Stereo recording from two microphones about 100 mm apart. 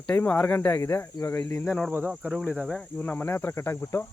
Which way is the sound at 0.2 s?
15° left (ahead or behind).